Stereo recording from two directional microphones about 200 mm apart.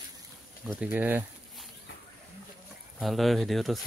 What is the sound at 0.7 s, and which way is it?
Speech, 5° right (ahead or behind).